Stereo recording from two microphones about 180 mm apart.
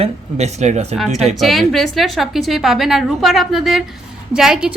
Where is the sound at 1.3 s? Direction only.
Centre (ahead or behind).